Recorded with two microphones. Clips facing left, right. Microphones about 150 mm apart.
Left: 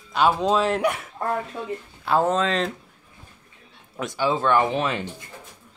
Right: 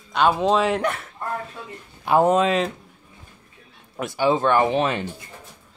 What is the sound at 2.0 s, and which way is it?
Speech, 15° right (ahead or behind).